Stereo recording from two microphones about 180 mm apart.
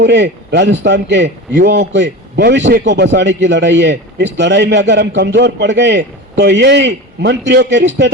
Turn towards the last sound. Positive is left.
turn(degrees=-75)  # may be behind; listen again after turning